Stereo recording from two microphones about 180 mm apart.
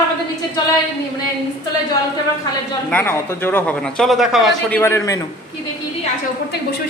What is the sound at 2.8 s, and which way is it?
Speech, 10° left (ahead or behind).